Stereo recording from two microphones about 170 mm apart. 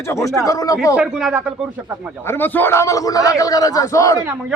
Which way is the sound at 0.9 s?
5° right (ahead or behind).